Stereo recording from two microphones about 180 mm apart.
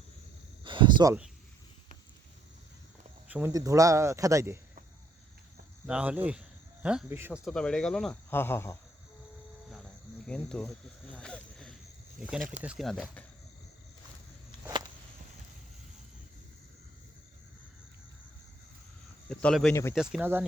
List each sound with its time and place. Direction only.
0.6 s a sound: 25° right (ahead or behind)
3.2 s speech: 10° right (ahead or behind)
3.5 s speech: 20° right (ahead or behind)
5.8 s speech: 5° right (ahead or behind); by 8.8 s 15° left (ahead or behind)
10.2 s cricket: 5° left (ahead or behind)
12.6 s speech: centre (ahead or behind)
19.3 s speech: 5° left (ahead or behind)